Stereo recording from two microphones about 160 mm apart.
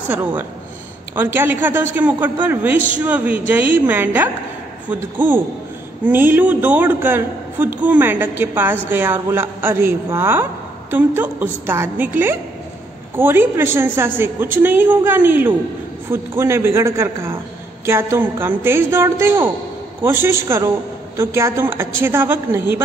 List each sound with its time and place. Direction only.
1.1 s a man's voice: 15° right (ahead or behind)
6.0 s a man's voice: 10° right (ahead or behind)